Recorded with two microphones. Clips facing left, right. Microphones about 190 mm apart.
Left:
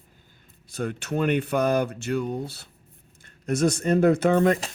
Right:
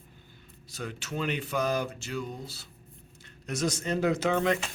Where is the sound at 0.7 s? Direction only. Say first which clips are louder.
Left 8 dB; 55° left (ahead or behind).